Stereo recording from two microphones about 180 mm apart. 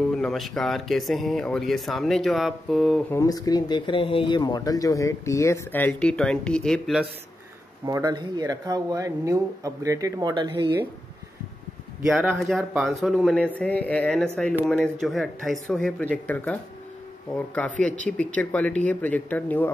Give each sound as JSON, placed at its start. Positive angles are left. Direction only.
{"t": 0.1, "sound": "speech", "side_deg": 0}
{"t": 3.1, "sound": "speech", "side_deg": 20}
{"t": 7.8, "sound": "speech", "side_deg": -20}
{"t": 12.1, "sound": "speech", "side_deg": -5}
{"t": 17.6, "sound": "speech", "side_deg": 5}